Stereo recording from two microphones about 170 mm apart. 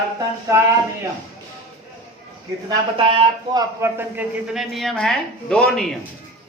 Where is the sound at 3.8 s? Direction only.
10° right (ahead or behind).